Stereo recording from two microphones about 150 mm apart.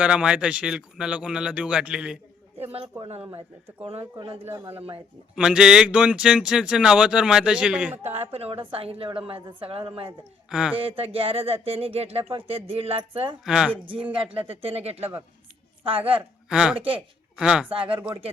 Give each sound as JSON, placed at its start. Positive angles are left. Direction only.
{"t": 0.0, "sound": "speech", "side_deg": -5}
{"t": 2.6, "sound": "a woman's voice", "side_deg": -40}
{"t": 4.4, "sound": "speech", "side_deg": -15}
{"t": 5.3, "sound": "speech", "side_deg": -5}
{"t": 8.0, "sound": "a woman's voice", "side_deg": -45}
{"t": 10.5, "sound": "speech", "side_deg": -5}
{"t": 10.8, "sound": "a woman's voice", "side_deg": -35}
{"t": 13.4, "sound": "speech", "side_deg": -5}
{"t": 13.8, "sound": "a woman's voice", "side_deg": -35}
{"t": 16.5, "sound": "speech", "side_deg": -5}
{"t": 16.7, "sound": "a woman's voice", "side_deg": -35}
{"t": 17.3, "sound": "speech", "side_deg": -5}
{"t": 17.7, "sound": "a woman's voice", "side_deg": -35}